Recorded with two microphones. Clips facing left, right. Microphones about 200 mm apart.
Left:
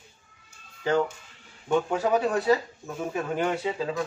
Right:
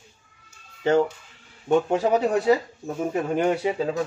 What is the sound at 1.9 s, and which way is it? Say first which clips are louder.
A man's voice: right 3 dB; 25° right (ahead or behind).